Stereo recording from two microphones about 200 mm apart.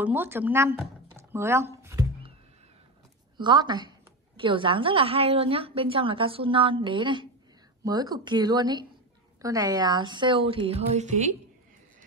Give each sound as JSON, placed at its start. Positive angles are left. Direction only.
{"t": 0.0, "sound": "speech", "side_deg": -10}
{"t": 3.3, "sound": "a woman's voice", "side_deg": -20}